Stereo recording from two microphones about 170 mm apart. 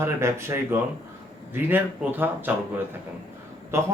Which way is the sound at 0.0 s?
15° right (ahead or behind).